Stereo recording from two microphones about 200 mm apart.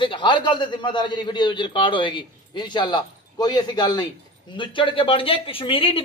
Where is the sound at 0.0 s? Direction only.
25° left (ahead or behind).